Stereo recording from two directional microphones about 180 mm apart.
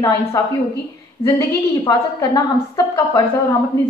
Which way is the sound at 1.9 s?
20° left (ahead or behind).